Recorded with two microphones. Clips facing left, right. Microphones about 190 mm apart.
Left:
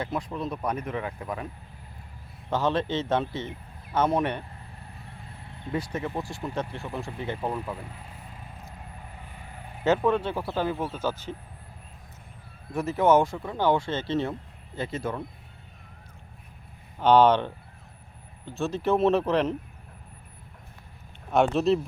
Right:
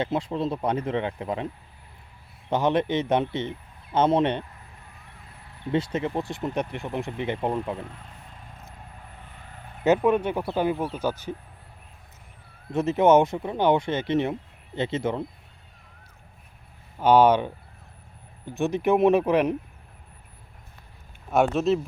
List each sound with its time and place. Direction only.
0.0 s speech: 25° right (ahead or behind)
2.5 s speech: 15° right (ahead or behind)
5.7 s speech: 20° right (ahead or behind)
9.8 s speech: 15° right (ahead or behind)
12.7 s speech: 20° right (ahead or behind)
17.0 s speech: 10° right (ahead or behind)
21.3 s speech: centre (ahead or behind)